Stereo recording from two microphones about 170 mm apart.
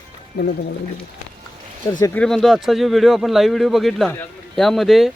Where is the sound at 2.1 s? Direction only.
5° left (ahead or behind).